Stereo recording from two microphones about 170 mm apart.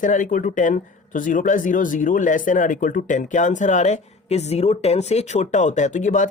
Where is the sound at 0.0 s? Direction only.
50° left (ahead or behind).